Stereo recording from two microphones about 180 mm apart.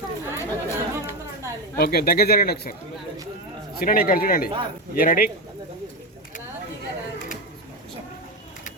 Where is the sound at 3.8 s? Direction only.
50° left (ahead or behind).